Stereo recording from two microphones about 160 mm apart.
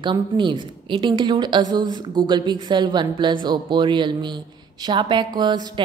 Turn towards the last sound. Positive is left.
turn(degrees=-25)  # may be behind; listen again after turning